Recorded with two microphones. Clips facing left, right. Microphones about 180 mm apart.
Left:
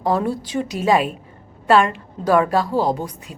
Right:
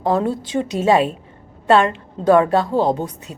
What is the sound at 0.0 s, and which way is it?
A woman's voice, 20° right (ahead or behind).